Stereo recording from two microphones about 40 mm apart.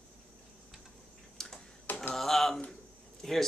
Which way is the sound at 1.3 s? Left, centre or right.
Centre.